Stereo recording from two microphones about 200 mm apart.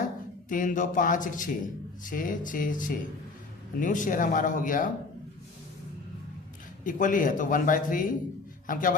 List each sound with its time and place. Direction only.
0.4 s speech: 40° left (ahead or behind)
6.8 s a man's voice: 40° left (ahead or behind)